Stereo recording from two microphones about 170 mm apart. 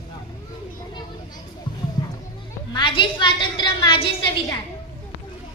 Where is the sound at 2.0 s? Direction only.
25° left (ahead or behind).